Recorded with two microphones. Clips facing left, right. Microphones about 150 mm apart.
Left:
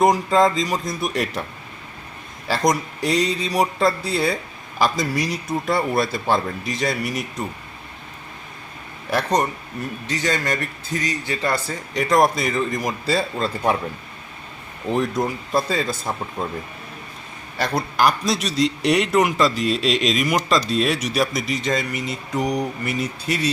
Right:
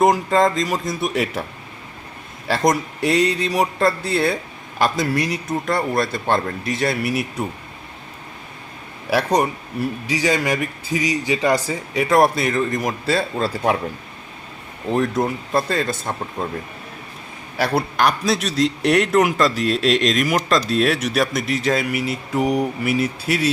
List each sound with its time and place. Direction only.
0.0 s a man's voice: centre (ahead or behind)
2.5 s a man's voice: centre (ahead or behind)
9.0 s a man's voice: 5° right (ahead or behind)
11.9 s a man's voice: 5° right (ahead or behind)
14.8 s a man's voice: centre (ahead or behind)
17.6 s a man's voice: 5° right (ahead or behind)